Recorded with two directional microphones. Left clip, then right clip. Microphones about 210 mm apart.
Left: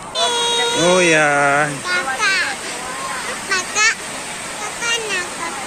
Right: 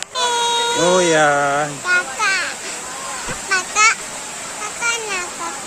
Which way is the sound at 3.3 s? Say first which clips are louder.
Right 2 dB; 50° right (ahead or behind).